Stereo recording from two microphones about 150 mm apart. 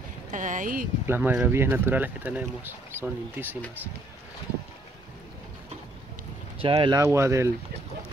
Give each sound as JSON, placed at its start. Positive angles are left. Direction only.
{"t": 0.3, "sound": "speech", "side_deg": -55}
{"t": 1.0, "sound": "speech", "side_deg": -15}
{"t": 6.6, "sound": "speech", "side_deg": -35}
{"t": 7.0, "sound": "speech", "side_deg": -20}